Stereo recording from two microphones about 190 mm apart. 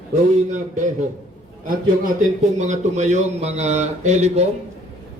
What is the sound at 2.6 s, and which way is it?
A man's voice, 40° right (ahead or behind).